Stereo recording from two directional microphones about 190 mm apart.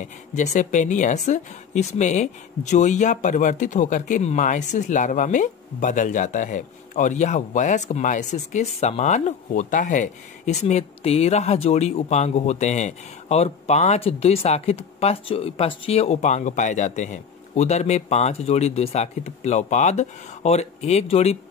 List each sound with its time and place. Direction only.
0.0 s a woman's voice: 40° left (ahead or behind)